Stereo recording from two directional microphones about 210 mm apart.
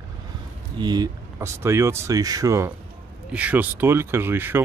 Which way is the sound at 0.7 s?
20° right (ahead or behind).